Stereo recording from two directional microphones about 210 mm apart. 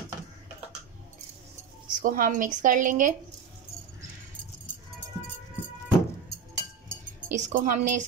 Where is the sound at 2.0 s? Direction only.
40° right (ahead or behind).